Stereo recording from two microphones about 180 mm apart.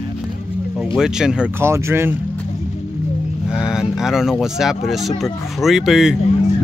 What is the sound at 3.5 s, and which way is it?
Speech, 5° right (ahead or behind).